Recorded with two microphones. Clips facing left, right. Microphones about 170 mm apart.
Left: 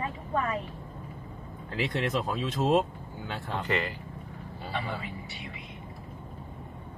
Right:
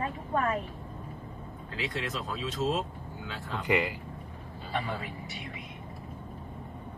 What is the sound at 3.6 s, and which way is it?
Speech, 15° right (ahead or behind).